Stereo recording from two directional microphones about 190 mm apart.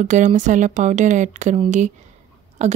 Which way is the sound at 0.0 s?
40° right (ahead or behind).